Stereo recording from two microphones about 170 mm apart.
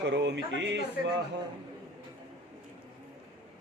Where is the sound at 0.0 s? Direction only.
90° right.